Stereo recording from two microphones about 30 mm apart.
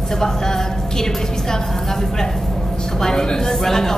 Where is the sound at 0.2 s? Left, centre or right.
Centre.